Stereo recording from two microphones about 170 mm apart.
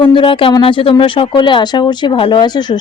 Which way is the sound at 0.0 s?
30° left (ahead or behind).